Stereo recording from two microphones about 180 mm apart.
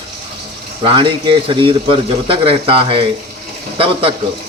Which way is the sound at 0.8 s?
30° right (ahead or behind).